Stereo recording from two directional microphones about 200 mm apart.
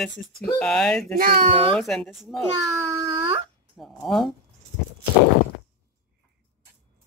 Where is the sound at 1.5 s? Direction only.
25° right (ahead or behind).